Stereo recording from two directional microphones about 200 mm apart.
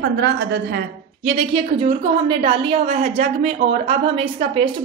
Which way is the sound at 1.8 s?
30° right (ahead or behind).